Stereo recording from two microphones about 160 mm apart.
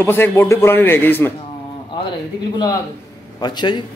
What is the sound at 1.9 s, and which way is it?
A man's voice, 30° left (ahead or behind).